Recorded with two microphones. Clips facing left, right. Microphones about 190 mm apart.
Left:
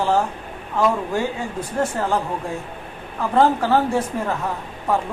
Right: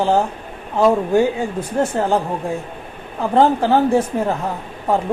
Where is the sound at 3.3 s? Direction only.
25° right (ahead or behind).